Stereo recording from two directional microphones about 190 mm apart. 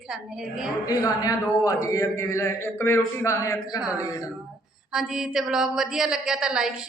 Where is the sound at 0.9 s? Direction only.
20° left (ahead or behind).